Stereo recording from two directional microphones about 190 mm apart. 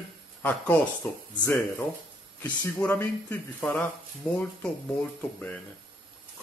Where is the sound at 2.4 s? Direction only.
10° left (ahead or behind).